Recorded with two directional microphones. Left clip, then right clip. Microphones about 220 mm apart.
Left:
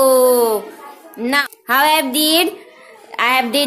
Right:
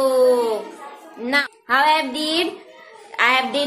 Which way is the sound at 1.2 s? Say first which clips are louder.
Left 3 dB; 50° left (ahead or behind).